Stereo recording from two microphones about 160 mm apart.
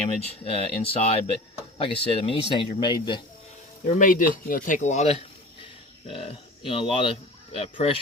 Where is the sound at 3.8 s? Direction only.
55° left (ahead or behind).